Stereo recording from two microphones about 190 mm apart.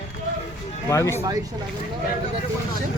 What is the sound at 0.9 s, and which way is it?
Speech, 15° left (ahead or behind).